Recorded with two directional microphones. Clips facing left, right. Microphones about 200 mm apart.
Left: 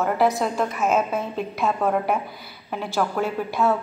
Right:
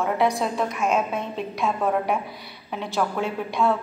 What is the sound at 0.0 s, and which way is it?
A woman's voice, centre (ahead or behind).